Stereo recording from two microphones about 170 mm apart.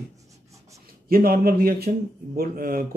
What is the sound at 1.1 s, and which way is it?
Speech, 60° right (ahead or behind).